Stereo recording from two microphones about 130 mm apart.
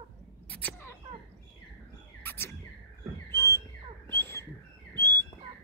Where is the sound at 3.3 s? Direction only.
20° left (ahead or behind).